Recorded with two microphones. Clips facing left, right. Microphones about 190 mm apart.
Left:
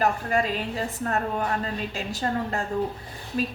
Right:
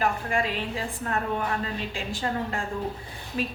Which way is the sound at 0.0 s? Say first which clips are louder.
Left 2 dB; 40° left (ahead or behind).